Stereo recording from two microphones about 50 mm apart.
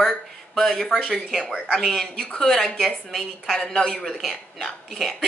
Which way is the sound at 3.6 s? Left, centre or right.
Centre.